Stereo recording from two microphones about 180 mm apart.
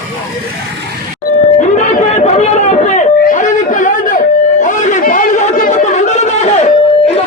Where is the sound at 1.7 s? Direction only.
40° left (ahead or behind).